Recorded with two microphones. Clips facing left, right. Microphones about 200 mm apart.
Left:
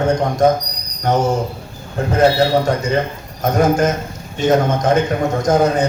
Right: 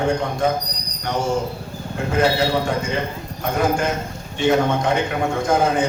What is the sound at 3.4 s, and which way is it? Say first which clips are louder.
A man's voice: left 6 dB; 40° left (ahead or behind).